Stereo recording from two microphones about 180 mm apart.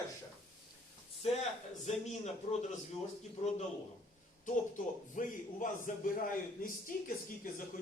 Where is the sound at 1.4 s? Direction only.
40° left (ahead or behind).